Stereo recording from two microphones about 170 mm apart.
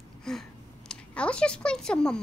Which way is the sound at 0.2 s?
5° left (ahead or behind).